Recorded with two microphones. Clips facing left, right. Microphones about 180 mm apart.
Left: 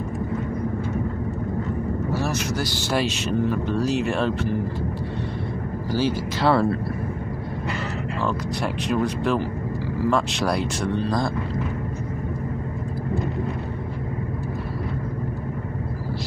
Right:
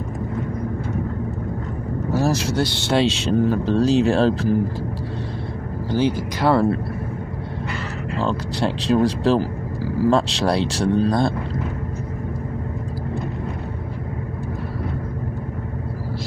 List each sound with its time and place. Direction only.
2.1 s vehicle: 40° right (ahead or behind)
2.5 s speech: 25° right (ahead or behind)
5.9 s speech: 20° right (ahead or behind)
8.3 s speech: 30° right (ahead or behind)